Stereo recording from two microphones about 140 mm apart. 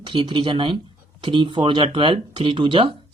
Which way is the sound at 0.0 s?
35° right (ahead or behind).